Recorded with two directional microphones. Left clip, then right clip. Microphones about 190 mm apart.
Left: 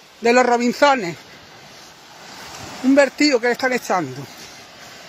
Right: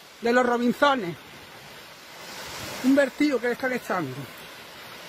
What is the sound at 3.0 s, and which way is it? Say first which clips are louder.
Speech: left 9 dB; 15° left (ahead or behind).